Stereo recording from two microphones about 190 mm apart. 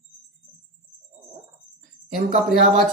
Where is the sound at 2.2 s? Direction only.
40° right (ahead or behind).